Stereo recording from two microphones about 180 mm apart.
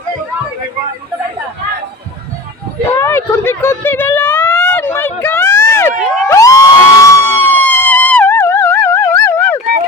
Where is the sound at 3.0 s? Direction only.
15° left (ahead or behind).